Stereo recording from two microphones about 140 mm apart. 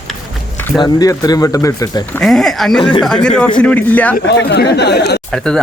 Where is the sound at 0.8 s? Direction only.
25° left (ahead or behind).